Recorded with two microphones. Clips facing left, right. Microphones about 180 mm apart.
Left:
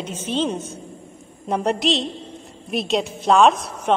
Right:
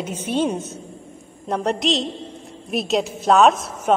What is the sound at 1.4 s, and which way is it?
A woman's voice, centre (ahead or behind).